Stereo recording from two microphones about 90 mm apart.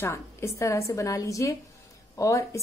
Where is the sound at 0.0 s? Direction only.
30° left (ahead or behind).